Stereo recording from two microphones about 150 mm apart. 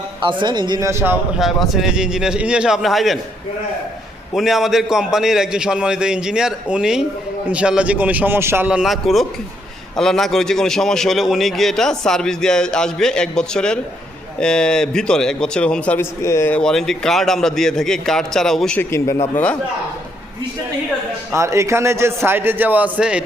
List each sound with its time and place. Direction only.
0.2 s a man's voice: 30° right (ahead or behind)
0.9 s a man's voice: 15° right (ahead or behind)
1.4 s a man's voice: centre (ahead or behind)
4.4 s a man's voice: centre (ahead or behind)
18.9 s speech: 20° left (ahead or behind)
21.3 s a man's voice: 20° right (ahead or behind)